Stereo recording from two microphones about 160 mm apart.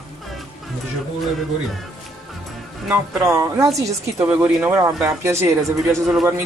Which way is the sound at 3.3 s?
20° right (ahead or behind).